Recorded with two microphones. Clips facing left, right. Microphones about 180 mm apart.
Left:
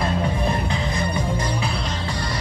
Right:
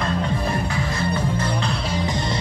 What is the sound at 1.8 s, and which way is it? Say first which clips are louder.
Music: right 3 dB; 15° right (ahead or behind).